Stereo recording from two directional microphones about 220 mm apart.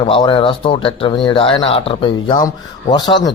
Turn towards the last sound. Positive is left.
turn(degrees=20)  # may be behind; listen again after turning